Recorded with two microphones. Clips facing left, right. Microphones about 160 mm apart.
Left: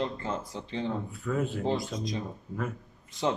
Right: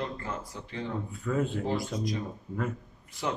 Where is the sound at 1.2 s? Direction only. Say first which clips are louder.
Right 1 dB; centre (ahead or behind).